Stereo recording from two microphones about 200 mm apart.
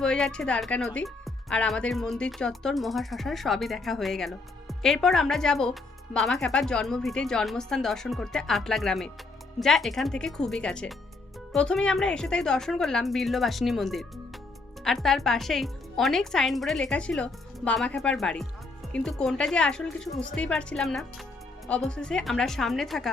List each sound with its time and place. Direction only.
0.0 s speech: 5° left (ahead or behind)